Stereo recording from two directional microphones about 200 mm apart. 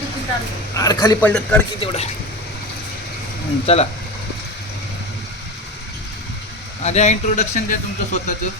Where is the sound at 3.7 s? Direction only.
30° left (ahead or behind).